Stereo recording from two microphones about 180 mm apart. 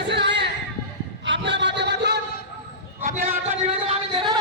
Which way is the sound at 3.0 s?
45° right (ahead or behind).